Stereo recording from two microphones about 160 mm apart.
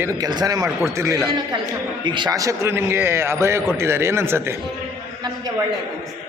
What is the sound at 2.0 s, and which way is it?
A man's voice, 30° right (ahead or behind).